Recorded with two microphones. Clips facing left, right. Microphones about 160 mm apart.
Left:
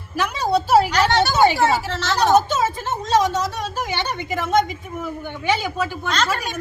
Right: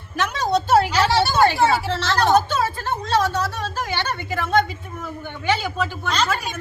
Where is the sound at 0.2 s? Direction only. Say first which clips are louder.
Left 1 dB; 10° left (ahead or behind).